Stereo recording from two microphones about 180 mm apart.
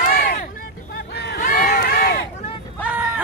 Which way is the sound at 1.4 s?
45° left (ahead or behind).